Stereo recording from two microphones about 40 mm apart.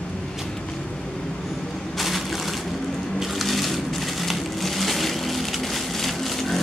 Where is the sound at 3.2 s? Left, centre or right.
Centre.